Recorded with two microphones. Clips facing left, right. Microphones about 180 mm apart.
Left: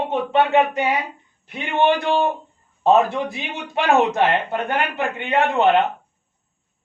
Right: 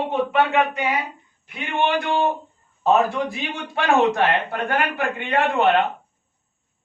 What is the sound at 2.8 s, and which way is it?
A man's voice, 25° left (ahead or behind).